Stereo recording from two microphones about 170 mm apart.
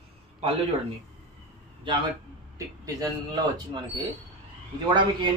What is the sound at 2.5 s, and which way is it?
Speech, 20° right (ahead or behind).